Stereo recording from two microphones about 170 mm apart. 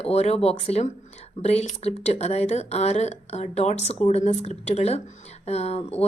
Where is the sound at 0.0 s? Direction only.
40° left (ahead or behind).